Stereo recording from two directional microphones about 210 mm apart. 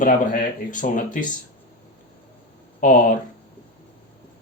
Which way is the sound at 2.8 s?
40° left (ahead or behind).